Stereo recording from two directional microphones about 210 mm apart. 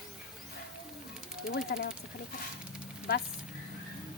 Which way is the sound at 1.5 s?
45° left (ahead or behind).